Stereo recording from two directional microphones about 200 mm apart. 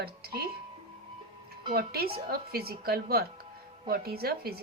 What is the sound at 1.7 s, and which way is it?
A woman's voice, 50° right (ahead or behind).